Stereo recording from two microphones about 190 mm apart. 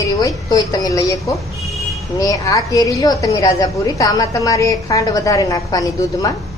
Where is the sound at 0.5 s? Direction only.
20° left (ahead or behind).